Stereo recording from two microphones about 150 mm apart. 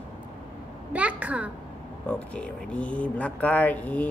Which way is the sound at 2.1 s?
10° left (ahead or behind).